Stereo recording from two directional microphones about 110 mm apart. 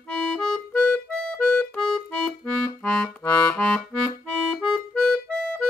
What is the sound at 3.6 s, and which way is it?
Music, 10° left (ahead or behind).